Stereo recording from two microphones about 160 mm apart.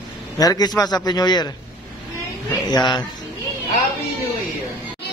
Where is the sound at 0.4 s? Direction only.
25° left (ahead or behind).